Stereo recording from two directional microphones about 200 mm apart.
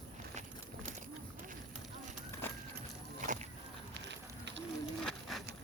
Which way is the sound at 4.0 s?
60° right (ahead or behind).